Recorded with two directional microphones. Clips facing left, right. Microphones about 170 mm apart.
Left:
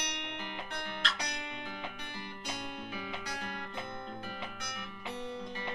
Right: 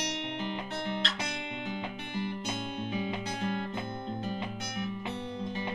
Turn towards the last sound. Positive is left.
turn(degrees=-25)  # may be behind; listen again after turning